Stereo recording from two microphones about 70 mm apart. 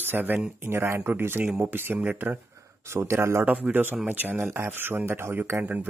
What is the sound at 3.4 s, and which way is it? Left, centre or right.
Speech, centre.